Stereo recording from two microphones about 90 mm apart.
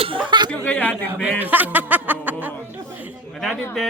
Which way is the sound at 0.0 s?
75° right (ahead or behind).